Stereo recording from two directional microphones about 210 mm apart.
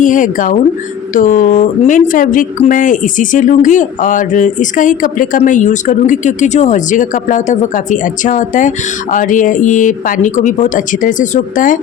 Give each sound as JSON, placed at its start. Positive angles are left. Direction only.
{"t": 0.0, "sound": "speech", "side_deg": 40}